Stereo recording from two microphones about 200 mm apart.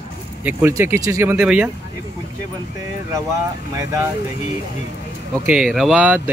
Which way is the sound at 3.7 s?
15° right (ahead or behind).